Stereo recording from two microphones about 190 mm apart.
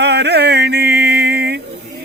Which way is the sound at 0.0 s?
60° right (ahead or behind).